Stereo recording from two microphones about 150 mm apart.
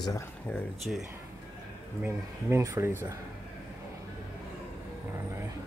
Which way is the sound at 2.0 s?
20° right (ahead or behind).